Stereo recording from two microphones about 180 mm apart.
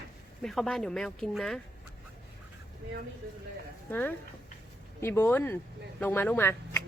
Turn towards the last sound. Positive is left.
turn(degrees=10)  # may be behind; listen again after turning